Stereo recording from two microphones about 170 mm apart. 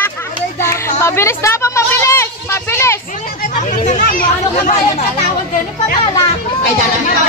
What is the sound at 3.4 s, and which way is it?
Speech, 50° left (ahead or behind).